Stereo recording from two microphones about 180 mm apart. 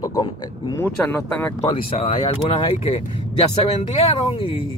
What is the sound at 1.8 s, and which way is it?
Speech, 30° left (ahead or behind).